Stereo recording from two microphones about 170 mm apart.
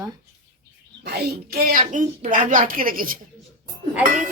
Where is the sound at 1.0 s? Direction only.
70° right (ahead or behind).